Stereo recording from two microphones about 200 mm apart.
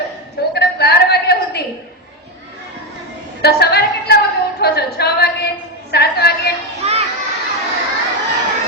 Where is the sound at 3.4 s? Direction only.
55° left (ahead or behind).